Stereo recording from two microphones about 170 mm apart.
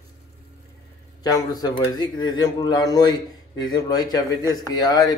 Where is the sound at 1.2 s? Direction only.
20° left (ahead or behind).